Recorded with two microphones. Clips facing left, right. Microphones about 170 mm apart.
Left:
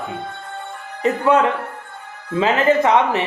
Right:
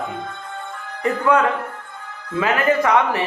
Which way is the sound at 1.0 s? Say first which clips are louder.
Left 2 dB; 20° left (ahead or behind).